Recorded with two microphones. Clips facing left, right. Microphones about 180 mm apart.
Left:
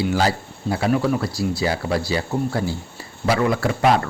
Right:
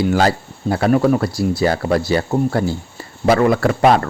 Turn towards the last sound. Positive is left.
turn(degrees=-55)  # may be behind; listen again after turning